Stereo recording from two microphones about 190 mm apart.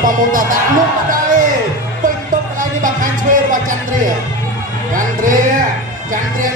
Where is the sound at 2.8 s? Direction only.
45° right (ahead or behind).